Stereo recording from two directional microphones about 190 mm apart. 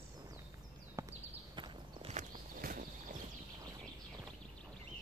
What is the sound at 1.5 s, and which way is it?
Walk, 25° right (ahead or behind).